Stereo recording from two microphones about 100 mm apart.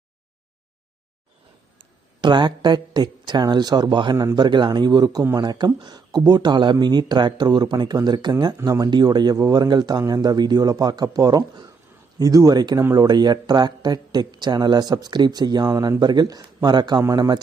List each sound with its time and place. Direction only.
1.8 s speech: 50° right (ahead or behind)